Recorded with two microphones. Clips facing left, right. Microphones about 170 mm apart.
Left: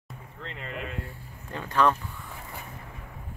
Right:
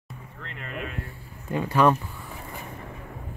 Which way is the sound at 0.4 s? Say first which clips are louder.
Left 1 dB; 20° left (ahead or behind).